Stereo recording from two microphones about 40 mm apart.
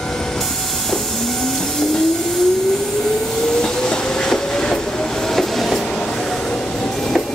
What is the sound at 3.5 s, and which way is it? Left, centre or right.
Train, centre.